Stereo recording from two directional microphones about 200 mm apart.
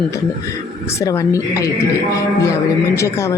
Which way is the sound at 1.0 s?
15° left (ahead or behind).